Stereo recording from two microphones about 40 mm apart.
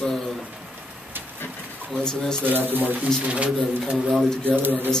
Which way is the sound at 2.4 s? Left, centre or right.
Right.